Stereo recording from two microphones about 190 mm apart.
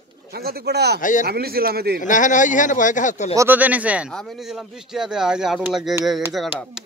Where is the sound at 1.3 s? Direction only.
55° right (ahead or behind).